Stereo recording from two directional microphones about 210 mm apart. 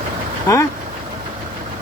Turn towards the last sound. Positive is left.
turn(degrees=15)  # may be behind; listen again after turning